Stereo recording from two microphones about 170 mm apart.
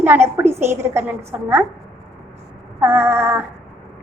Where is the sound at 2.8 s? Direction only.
15° right (ahead or behind).